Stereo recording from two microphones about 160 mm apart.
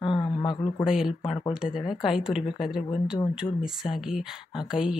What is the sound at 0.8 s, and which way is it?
Speech, 5° right (ahead or behind).